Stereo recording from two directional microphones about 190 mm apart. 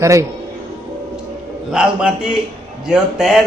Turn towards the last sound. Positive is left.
turn(degrees=-5)  # may be behind; listen again after turning